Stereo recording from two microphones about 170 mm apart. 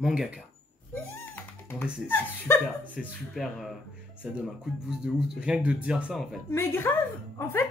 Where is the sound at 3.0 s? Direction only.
Centre (ahead or behind).